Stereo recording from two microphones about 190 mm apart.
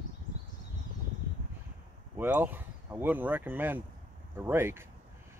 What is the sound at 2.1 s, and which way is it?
Speech, 10° right (ahead or behind).